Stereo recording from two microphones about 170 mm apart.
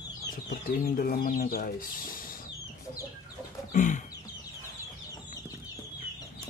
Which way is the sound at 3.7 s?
50° left (ahead or behind).